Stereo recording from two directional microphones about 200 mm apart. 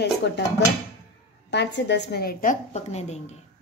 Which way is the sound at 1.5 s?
60° left (ahead or behind).